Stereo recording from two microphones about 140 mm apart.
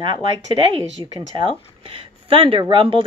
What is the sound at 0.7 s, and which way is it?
Speech, 35° right (ahead or behind).